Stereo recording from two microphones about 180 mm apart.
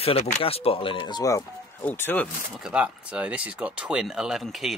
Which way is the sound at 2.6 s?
5° right (ahead or behind).